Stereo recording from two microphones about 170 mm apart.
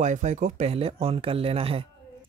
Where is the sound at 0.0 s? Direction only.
45° right (ahead or behind).